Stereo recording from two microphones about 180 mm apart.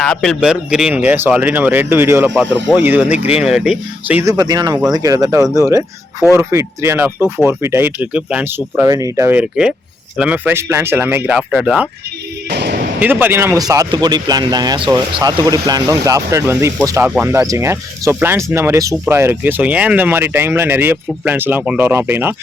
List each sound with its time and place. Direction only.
0.0 s a man's voice: 5° left (ahead or behind)
4.2 s speech: 20° right (ahead or behind)
12.5 s speech: 70° right (ahead or behind)
13.0 s speech: 10° right (ahead or behind)